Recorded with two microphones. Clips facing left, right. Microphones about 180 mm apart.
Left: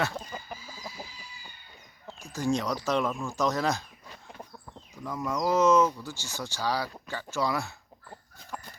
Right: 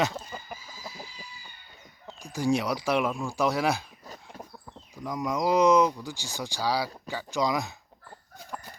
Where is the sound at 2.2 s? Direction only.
15° right (ahead or behind).